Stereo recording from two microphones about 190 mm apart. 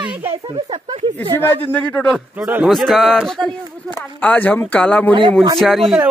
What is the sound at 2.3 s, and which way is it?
Speech, 10° right (ahead or behind).